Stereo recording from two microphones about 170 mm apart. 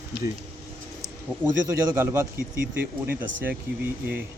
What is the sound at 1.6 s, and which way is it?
Speech, 20° right (ahead or behind).